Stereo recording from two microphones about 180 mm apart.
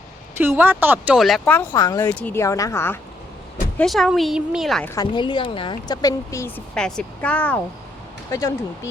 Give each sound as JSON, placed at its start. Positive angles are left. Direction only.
{"t": 0.3, "sound": "speech", "side_deg": -10}
{"t": 1.5, "sound": "a woman's voice", "side_deg": 20}
{"t": 3.8, "sound": "speech", "side_deg": 0}
{"t": 4.9, "sound": "a woman's voice", "side_deg": 25}
{"t": 6.7, "sound": "a woman's voice", "side_deg": 5}
{"t": 8.3, "sound": "a woman's voice", "side_deg": 20}